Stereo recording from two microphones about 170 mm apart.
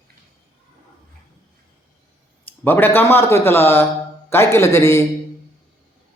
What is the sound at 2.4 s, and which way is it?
Speech, 10° left (ahead or behind).